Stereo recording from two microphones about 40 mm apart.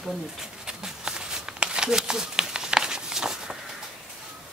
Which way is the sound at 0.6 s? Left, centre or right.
Centre.